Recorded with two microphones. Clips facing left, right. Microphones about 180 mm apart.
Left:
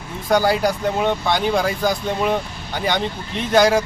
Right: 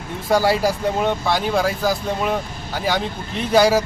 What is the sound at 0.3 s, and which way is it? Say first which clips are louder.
Speech: even; centre (ahead or behind).